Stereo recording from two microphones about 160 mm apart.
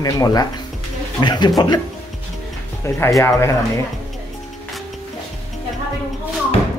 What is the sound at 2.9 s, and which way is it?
Speech, 15° left (ahead or behind).